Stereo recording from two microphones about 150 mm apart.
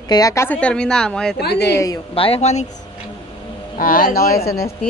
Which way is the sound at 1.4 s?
90° left.